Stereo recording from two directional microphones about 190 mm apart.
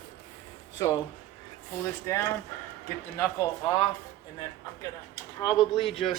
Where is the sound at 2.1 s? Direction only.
15° left (ahead or behind).